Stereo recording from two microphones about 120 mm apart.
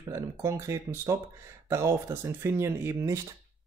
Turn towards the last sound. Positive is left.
turn(degrees=-25)  # may be behind; listen again after turning